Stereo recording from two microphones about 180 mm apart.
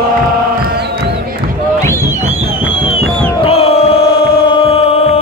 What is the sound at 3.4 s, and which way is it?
Crowd, 35° left (ahead or behind).